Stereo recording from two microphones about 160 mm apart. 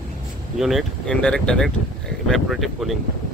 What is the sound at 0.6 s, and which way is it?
Speech, centre (ahead or behind).